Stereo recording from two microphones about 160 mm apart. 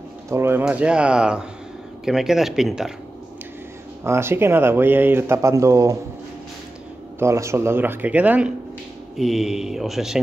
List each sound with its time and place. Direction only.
0.3 s speech: 15° right (ahead or behind)
4.0 s speech: 15° right (ahead or behind)
7.2 s speech: 20° right (ahead or behind)